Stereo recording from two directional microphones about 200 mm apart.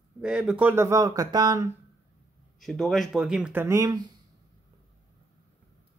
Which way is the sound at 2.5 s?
Centre (ahead or behind).